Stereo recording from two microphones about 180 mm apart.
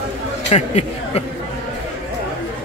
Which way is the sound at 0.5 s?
35° left (ahead or behind).